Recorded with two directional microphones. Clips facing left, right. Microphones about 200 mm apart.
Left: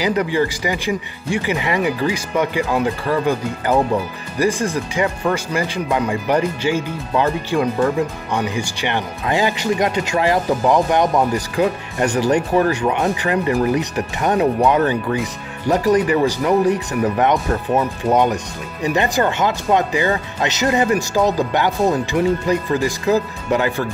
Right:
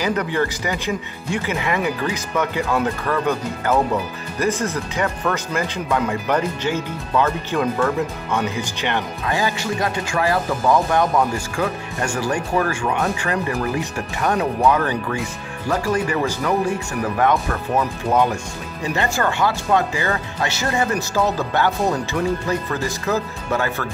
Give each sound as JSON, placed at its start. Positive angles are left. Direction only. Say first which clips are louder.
{"t": 0.0, "sound": "speech", "louder": "left 3 dB", "side_deg": 10}